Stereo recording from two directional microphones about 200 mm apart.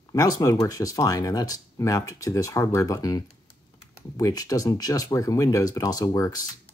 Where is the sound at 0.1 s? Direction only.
20° left (ahead or behind).